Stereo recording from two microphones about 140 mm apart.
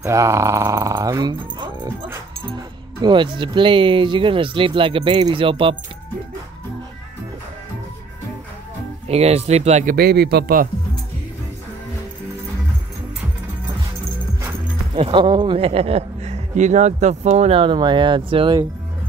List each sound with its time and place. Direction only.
0.0 s speech: 20° right (ahead or behind)
3.0 s speech: 35° right (ahead or behind)
9.0 s speech: 50° right (ahead or behind)
15.0 s speech: 40° right (ahead or behind)